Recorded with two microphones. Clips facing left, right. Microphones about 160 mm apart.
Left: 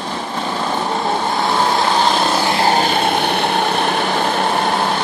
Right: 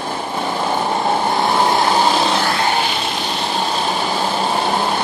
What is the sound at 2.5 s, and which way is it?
Vehicle, 35° left (ahead or behind).